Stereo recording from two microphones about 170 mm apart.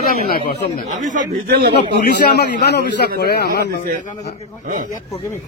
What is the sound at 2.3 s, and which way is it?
A man's voice, 75° left (ahead or behind).